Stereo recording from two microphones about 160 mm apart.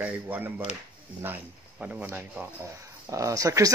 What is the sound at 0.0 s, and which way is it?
Speech, 10° right (ahead or behind).